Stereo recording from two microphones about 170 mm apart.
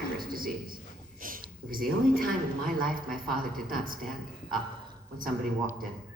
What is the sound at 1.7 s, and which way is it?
A man's voice, 55° right (ahead or behind).